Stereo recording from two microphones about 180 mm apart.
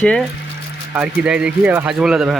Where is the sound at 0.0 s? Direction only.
5° left (ahead or behind).